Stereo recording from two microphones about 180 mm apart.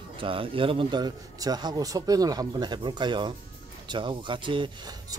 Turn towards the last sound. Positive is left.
turn(degrees=-25)  # may be behind; listen again after turning